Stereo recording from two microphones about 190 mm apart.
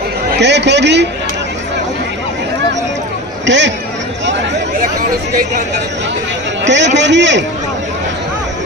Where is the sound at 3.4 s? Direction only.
70° right (ahead or behind).